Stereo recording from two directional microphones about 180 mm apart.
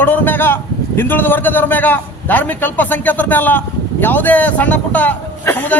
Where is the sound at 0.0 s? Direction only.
10° left (ahead or behind).